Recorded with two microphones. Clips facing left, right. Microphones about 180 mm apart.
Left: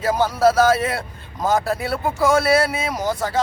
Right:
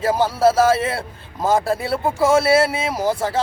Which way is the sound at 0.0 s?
30° right (ahead or behind).